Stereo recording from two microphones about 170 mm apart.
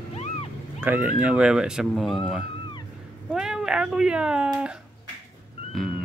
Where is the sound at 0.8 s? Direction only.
10° right (ahead or behind).